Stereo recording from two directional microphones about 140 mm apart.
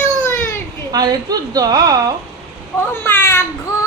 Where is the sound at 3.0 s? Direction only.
20° left (ahead or behind).